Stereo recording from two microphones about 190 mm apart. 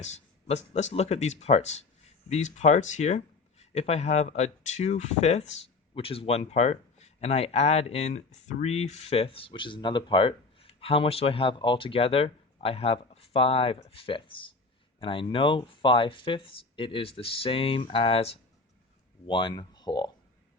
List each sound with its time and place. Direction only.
0.0 s speech: 35° left (ahead or behind)